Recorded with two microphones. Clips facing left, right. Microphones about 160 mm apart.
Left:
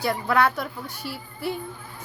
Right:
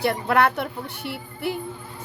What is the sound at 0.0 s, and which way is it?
A woman's voice, 60° right (ahead or behind).